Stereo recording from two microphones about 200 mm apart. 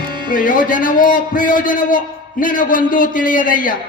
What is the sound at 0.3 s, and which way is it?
A man's voice, 45° left (ahead or behind).